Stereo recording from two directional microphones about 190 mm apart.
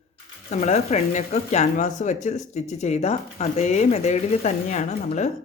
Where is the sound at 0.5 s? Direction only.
35° left (ahead or behind).